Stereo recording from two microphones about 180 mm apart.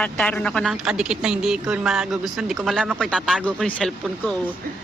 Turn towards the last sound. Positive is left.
turn(degrees=5)  # may be behind; listen again after turning